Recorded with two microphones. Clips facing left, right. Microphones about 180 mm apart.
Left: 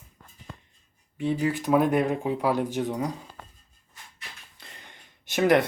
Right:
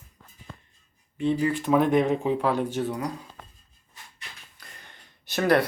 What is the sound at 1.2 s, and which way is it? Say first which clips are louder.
Speech: right 2 dB; 10° left (ahead or behind).